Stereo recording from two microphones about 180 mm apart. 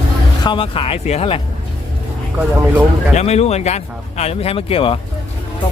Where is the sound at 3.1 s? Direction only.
40° left (ahead or behind).